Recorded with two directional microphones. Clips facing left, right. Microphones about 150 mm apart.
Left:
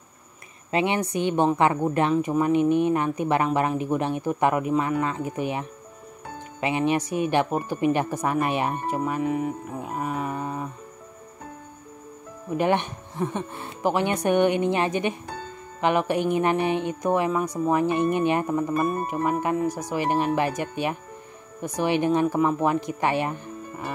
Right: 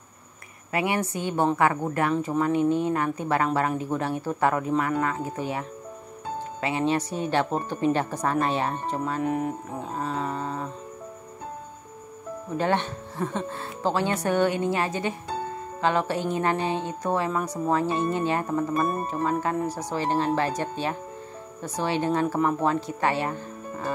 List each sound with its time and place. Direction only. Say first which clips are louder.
0.7 s speech: left 2 dB; 25° left (ahead or behind)
9.2 s speech: right 1 dB; centre (ahead or behind)
9.8 s speech: left 1 dB; 15° left (ahead or behind)
12.5 s speech: left 2 dB; 15° left (ahead or behind)